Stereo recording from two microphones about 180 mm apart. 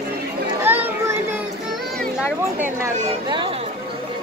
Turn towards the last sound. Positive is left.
turn(degrees=-25)  # may be behind; listen again after turning